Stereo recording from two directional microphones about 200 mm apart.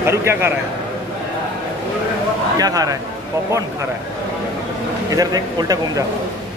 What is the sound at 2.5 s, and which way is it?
Speech, 20° right (ahead or behind).